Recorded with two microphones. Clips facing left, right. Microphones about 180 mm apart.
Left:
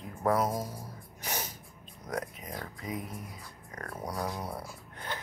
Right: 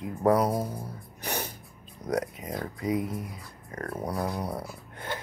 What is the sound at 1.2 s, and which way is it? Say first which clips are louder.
Snort: right 4 dB; 60° right (ahead or behind).